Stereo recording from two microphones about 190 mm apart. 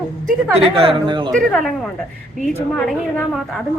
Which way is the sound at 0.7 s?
25° right (ahead or behind).